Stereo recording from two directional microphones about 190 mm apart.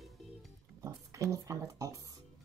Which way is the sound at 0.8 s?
15° right (ahead or behind).